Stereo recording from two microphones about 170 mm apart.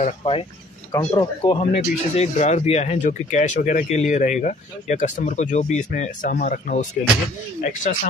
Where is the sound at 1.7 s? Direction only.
40° left (ahead or behind).